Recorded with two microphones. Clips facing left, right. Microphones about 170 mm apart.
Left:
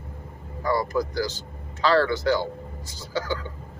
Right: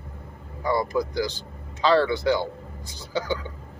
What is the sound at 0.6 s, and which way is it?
Speech, 15° right (ahead or behind).